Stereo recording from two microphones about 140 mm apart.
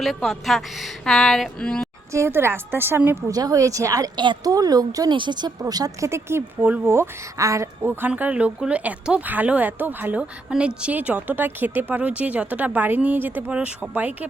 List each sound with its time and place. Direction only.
0.0 s speech: centre (ahead or behind)
2.1 s a woman's voice: 20° right (ahead or behind)
3.3 s a woman's voice: 25° right (ahead or behind); by 14.3 s 10° right (ahead or behind)